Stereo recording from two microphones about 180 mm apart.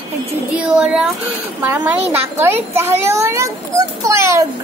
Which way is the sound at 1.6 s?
10° right (ahead or behind).